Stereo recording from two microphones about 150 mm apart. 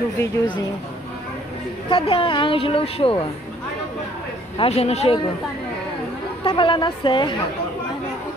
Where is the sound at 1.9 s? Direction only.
35° left (ahead or behind).